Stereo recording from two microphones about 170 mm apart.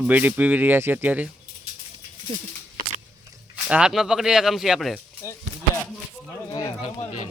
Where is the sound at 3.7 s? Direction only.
5° right (ahead or behind).